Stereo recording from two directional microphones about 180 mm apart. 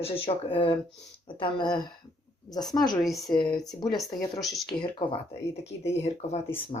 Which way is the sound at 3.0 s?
Centre (ahead or behind).